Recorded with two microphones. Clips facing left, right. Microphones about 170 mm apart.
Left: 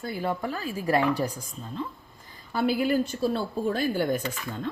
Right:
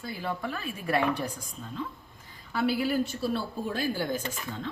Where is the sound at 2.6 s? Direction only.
45° left (ahead or behind).